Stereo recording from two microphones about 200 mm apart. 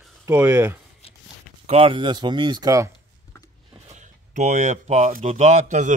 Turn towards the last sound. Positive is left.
turn(degrees=-40)  # may be behind; listen again after turning